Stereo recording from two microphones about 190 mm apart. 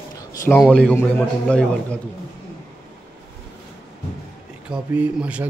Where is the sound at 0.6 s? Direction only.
5° left (ahead or behind).